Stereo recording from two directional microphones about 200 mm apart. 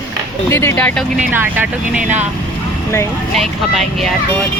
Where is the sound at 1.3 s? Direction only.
10° right (ahead or behind).